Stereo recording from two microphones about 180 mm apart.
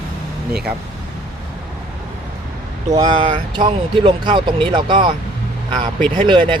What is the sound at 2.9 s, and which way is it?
Speech, 25° right (ahead or behind).